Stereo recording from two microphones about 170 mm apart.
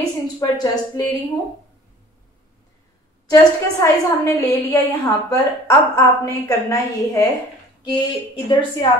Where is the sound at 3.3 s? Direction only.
20° left (ahead or behind).